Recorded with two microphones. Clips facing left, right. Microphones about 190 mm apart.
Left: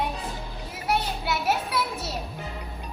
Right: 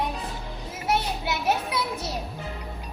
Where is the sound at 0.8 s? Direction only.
20° right (ahead or behind).